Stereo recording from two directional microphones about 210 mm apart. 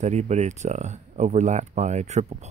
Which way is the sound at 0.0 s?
30° right (ahead or behind).